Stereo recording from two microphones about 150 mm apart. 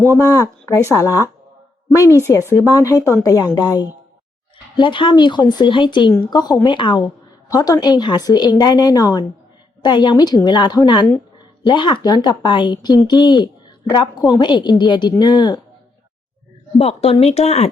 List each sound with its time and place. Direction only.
0.2 s speech: 20° left (ahead or behind)
2.5 s speech: 20° left (ahead or behind)
16.7 s speech: 40° left (ahead or behind)